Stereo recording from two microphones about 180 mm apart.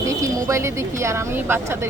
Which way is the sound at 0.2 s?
20° right (ahead or behind).